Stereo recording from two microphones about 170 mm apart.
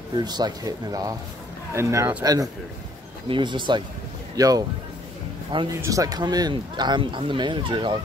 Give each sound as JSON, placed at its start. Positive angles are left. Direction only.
{"t": 0.1, "sound": "speech", "side_deg": -25}
{"t": 5.8, "sound": "speech", "side_deg": -20}